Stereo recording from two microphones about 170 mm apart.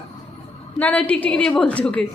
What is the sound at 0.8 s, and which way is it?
A woman's voice, 10° left (ahead or behind).